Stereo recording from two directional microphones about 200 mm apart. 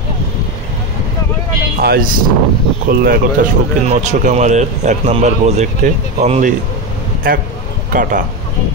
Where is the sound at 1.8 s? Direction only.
50° right (ahead or behind).